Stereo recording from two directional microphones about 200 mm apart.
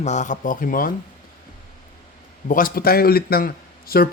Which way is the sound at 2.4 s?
45° left (ahead or behind).